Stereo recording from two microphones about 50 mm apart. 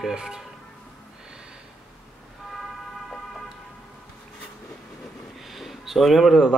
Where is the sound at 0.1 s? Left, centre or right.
Centre.